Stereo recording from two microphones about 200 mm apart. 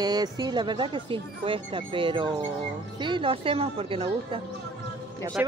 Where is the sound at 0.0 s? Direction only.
20° right (ahead or behind).